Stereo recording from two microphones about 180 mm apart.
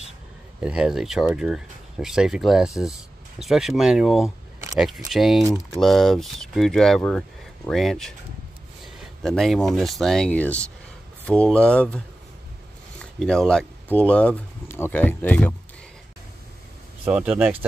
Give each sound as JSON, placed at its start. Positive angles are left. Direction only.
{"t": 0.6, "sound": "speech", "side_deg": -5}
{"t": 9.2, "sound": "speech", "side_deg": 0}
{"t": 13.0, "sound": "speech", "side_deg": 5}
{"t": 17.1, "sound": "speech", "side_deg": -5}